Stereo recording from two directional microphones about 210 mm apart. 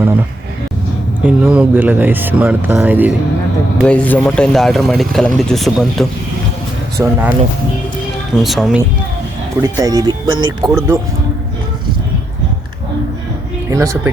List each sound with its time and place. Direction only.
1.2 s speech: 5° right (ahead or behind)
3.8 s speech: 5° left (ahead or behind)
7.0 s speech: 10° right (ahead or behind)
8.4 s speech: centre (ahead or behind)
9.6 s speech: 15° right (ahead or behind)
13.7 s speech: 15° right (ahead or behind)